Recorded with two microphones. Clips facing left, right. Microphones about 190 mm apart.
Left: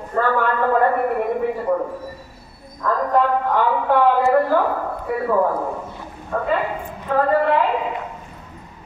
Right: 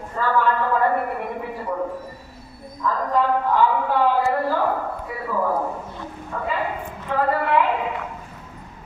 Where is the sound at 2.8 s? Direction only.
55° left (ahead or behind).